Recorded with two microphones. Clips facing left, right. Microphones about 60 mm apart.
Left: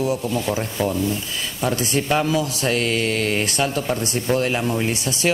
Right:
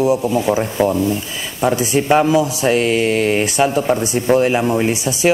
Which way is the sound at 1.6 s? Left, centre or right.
Centre.